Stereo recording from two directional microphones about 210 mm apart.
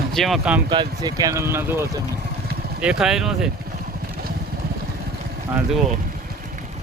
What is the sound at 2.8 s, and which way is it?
Speech, 5° right (ahead or behind).